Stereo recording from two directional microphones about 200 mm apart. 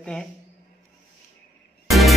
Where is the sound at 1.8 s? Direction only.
Centre (ahead or behind).